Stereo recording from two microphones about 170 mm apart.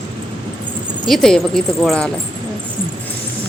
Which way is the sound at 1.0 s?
Centre (ahead or behind).